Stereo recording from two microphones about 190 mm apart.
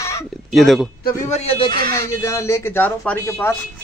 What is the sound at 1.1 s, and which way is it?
Speech, 35° left (ahead or behind).